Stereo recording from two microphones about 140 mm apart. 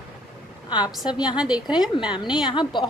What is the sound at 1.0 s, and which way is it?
Speech, 30° left (ahead or behind).